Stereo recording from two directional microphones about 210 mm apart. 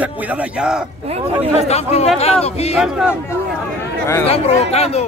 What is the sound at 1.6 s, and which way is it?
Speech, 30° left (ahead or behind).